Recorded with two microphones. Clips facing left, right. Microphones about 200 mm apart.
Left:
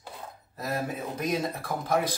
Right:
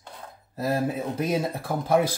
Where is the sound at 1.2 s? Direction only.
30° right (ahead or behind).